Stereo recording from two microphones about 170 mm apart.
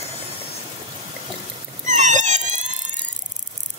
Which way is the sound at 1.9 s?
45° right (ahead or behind).